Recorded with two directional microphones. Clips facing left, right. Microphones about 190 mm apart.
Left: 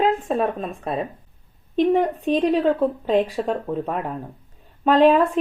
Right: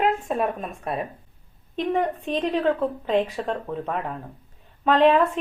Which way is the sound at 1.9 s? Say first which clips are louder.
Left 2 dB; centre (ahead or behind).